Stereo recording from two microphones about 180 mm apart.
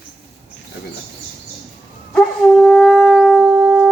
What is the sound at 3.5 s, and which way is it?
Music, 10° right (ahead or behind).